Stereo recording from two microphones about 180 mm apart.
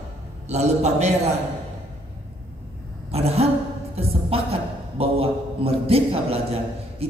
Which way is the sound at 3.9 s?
35° right (ahead or behind).